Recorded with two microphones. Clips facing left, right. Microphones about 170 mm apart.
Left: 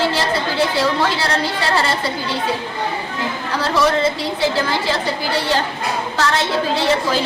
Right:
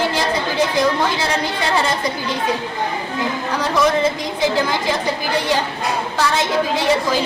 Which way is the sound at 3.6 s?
15° right (ahead or behind).